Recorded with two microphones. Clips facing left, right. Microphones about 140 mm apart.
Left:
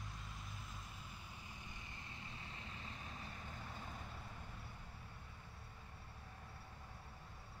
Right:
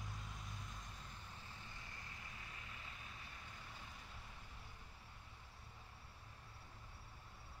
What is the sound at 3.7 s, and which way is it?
Vehicle, 50° left (ahead or behind).